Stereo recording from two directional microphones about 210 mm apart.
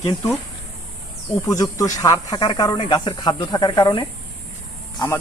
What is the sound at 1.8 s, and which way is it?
A man's voice, 15° left (ahead or behind).